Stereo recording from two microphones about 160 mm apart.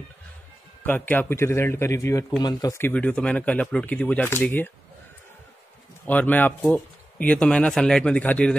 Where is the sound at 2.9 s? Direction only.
10° left (ahead or behind).